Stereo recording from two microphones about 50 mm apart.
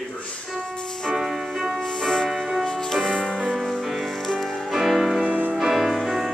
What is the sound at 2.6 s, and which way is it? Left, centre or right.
Music, centre.